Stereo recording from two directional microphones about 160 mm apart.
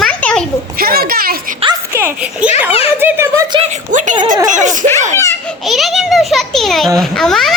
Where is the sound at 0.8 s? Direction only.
70° right (ahead or behind).